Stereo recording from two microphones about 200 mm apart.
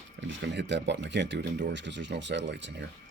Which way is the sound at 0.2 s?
65° right (ahead or behind).